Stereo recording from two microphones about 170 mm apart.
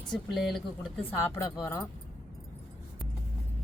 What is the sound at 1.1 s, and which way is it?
Speech, 20° left (ahead or behind).